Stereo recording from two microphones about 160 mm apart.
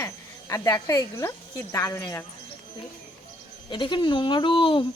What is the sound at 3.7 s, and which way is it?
Speech, 30° left (ahead or behind).